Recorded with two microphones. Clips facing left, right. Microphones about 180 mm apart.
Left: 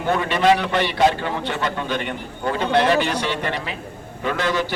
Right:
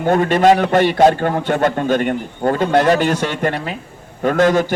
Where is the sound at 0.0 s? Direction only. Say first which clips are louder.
Right 6 dB; 45° right (ahead or behind).